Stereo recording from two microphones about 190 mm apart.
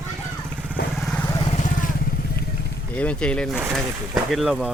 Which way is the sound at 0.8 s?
55° left (ahead or behind).